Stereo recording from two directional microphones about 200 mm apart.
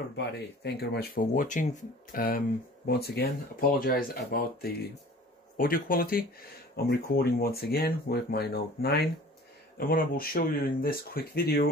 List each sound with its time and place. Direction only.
0.1 s speech: 55° left (ahead or behind)